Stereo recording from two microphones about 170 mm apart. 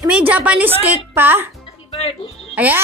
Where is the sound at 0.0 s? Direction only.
10° right (ahead or behind).